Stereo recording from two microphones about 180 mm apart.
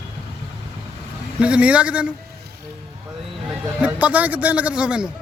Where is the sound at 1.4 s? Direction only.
5° right (ahead or behind).